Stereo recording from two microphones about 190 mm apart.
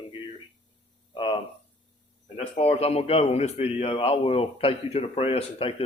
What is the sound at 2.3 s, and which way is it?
A man's voice, 35° left (ahead or behind).